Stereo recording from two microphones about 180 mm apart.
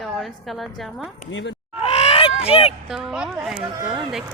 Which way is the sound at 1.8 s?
35° left (ahead or behind).